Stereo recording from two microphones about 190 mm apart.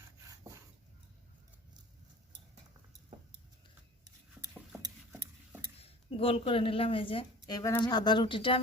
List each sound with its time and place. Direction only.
0.3 s rub: 15° right (ahead or behind)
5.8 s speech: 30° left (ahead or behind)
7.4 s speech: 20° left (ahead or behind)